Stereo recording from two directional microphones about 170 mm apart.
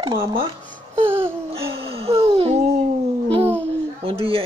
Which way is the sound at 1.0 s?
15° right (ahead or behind).